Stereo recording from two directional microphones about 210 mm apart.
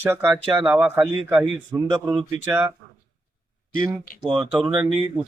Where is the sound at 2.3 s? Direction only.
10° right (ahead or behind).